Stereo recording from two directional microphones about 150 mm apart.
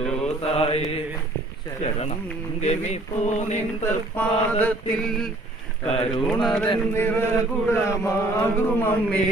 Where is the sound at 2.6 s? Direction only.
50° left (ahead or behind).